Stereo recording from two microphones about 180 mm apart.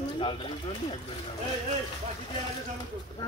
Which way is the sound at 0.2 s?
30° left (ahead or behind).